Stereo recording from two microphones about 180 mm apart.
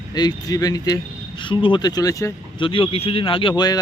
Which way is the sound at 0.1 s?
20° left (ahead or behind).